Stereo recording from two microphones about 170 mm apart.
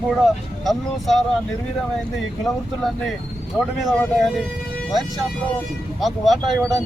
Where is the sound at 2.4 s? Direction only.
Centre (ahead or behind).